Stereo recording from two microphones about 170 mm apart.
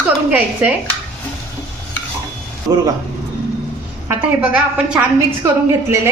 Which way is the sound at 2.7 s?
15° right (ahead or behind).